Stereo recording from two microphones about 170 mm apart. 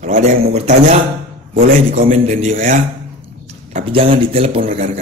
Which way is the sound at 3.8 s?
35° right (ahead or behind).